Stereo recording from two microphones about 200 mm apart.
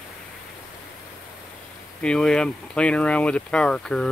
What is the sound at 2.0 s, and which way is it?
Speech, 5° left (ahead or behind).